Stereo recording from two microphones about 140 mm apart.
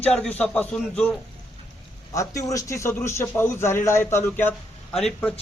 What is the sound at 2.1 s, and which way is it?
A man's voice, 25° left (ahead or behind).